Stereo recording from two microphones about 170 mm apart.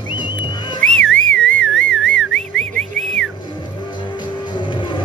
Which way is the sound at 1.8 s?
90° left.